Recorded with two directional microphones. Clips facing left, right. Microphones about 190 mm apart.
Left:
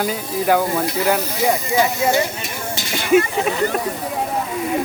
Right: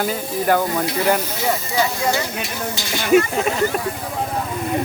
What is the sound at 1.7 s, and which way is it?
Speech, 20° left (ahead or behind).